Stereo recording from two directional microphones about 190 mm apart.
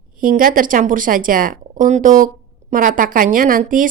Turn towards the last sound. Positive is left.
turn(degrees=-45)  # may be behind; listen again after turning